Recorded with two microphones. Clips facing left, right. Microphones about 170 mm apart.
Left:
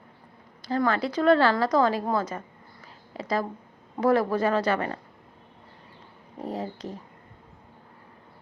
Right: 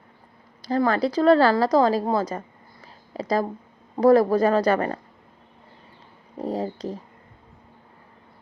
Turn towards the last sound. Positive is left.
turn(degrees=-35)  # may be behind; listen again after turning